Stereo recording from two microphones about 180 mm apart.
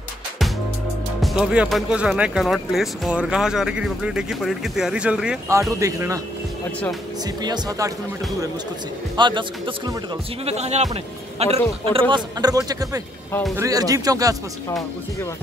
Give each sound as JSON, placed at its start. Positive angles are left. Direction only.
{"t": 1.2, "sound": "speech", "side_deg": -5}
{"t": 5.5, "sound": "speech", "side_deg": -15}
{"t": 7.4, "sound": "speech", "side_deg": -20}
{"t": 10.4, "sound": "speech", "side_deg": -35}